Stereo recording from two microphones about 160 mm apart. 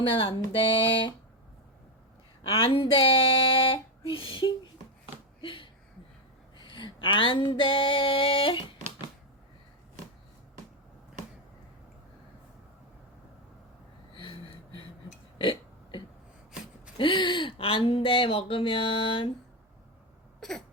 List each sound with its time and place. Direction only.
0.0 s speech: 35° left (ahead or behind)
2.4 s speech: 35° left (ahead or behind)
5.4 s a sound: 30° left (ahead or behind)
6.7 s speech: 30° left (ahead or behind)
14.1 s gasp: 30° left (ahead or behind)
15.4 s burping: 30° left (ahead or behind)
17.0 s speech: 30° left (ahead or behind)